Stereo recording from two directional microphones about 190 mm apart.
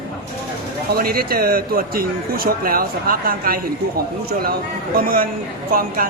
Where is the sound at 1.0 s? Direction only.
50° right (ahead or behind).